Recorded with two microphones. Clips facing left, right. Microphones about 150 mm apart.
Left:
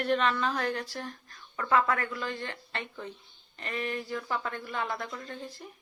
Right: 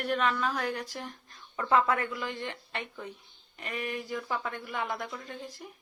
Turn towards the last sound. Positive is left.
turn(degrees=-5)  # may be behind; listen again after turning